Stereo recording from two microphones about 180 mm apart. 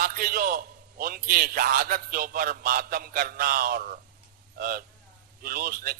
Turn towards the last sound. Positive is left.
turn(degrees=-55)  # may be behind; listen again after turning